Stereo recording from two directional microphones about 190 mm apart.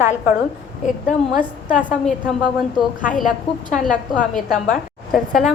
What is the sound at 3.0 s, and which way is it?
Speech, 45° left (ahead or behind).